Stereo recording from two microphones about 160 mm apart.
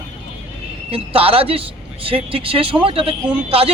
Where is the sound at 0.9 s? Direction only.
35° right (ahead or behind).